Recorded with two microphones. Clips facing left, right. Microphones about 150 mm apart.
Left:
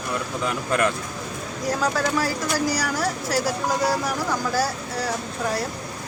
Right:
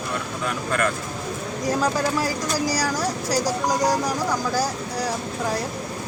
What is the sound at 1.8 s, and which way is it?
Speech, 15° right (ahead or behind).